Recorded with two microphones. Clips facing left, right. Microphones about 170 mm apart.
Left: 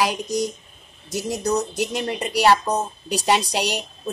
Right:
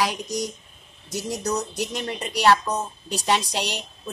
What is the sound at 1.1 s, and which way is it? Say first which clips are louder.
A woman's voice: left 4 dB; 5° left (ahead or behind).